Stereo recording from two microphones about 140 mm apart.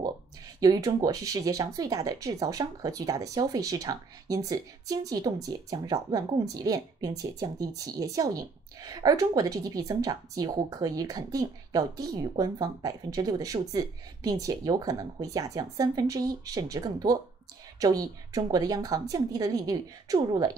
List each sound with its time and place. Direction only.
0.6 s speech: 25° right (ahead or behind)